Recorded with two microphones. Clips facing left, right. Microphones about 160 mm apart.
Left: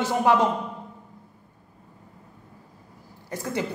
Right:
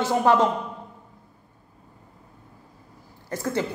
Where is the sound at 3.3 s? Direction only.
15° left (ahead or behind).